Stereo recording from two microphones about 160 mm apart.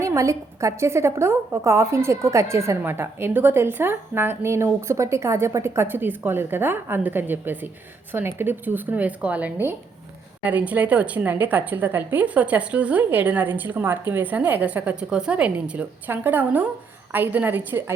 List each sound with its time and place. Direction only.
0.0 s a woman's voice: 20° right (ahead or behind)